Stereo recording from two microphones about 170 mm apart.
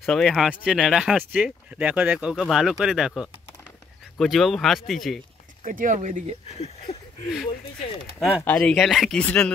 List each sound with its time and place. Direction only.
0.0 s speech: centre (ahead or behind)
5.6 s speech: 50° right (ahead or behind)
6.5 s a sound: 40° left (ahead or behind)
8.3 s speech: 10° left (ahead or behind)